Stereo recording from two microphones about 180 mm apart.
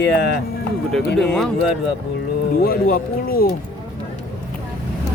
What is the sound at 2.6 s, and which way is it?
Speech, 55° left (ahead or behind).